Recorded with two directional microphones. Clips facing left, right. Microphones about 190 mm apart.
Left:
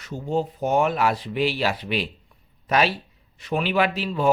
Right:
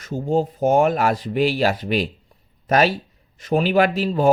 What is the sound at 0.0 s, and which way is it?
Speech, 45° right (ahead or behind).